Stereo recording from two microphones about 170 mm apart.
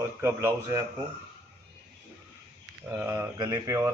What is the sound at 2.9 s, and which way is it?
A man's voice, 15° right (ahead or behind).